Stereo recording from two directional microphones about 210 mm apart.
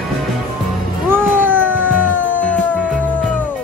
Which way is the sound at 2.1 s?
65° left (ahead or behind).